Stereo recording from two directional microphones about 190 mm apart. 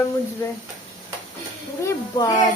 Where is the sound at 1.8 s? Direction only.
20° left (ahead or behind).